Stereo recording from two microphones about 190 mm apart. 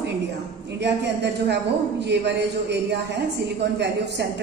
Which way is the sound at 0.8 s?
60° right (ahead or behind).